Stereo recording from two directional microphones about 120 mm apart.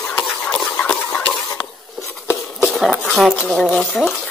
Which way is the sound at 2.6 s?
Centre (ahead or behind).